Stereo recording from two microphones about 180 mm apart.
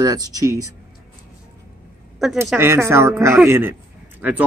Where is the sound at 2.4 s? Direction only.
10° right (ahead or behind).